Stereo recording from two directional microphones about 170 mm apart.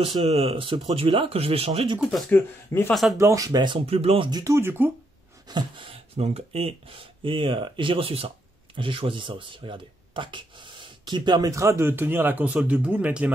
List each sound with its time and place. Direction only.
0.0 s speech: 35° right (ahead or behind)
2.0 s speech: centre (ahead or behind)
3.2 s speech: 20° right (ahead or behind); by 4.3 s 35° right (ahead or behind)
4.3 s speech: 20° right (ahead or behind)
5.5 s speech: 25° right (ahead or behind); by 13.3 s 10° right (ahead or behind)